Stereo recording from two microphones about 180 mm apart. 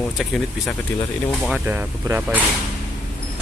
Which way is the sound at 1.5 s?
10° right (ahead or behind).